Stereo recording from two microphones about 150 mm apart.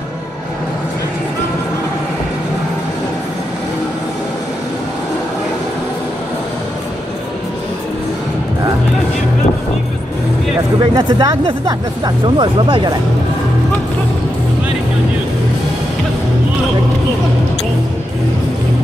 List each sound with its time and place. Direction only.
10.8 s speech: 30° right (ahead or behind)